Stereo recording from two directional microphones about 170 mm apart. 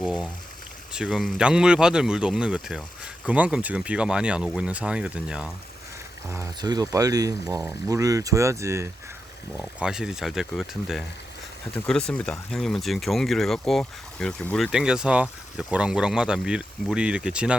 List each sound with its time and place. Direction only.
0.0 s a sound: centre (ahead or behind)
0.9 s speech: centre (ahead or behind)
6.2 s speech: 15° right (ahead or behind)
9.8 s speech: 5° right (ahead or behind)